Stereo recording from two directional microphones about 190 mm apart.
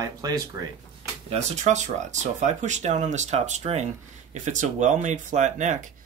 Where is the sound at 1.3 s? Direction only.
40° right (ahead or behind).